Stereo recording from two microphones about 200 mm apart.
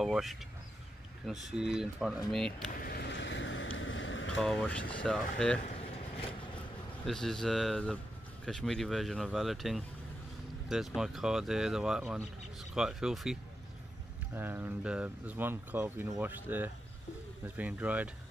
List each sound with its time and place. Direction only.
0.0 s speech: centre (ahead or behind)
2.8 s vehicle: 50° left (ahead or behind); by 4.4 s 70° left (ahead or behind)
4.4 s speech: 5° left (ahead or behind)
7.1 s speech: centre (ahead or behind)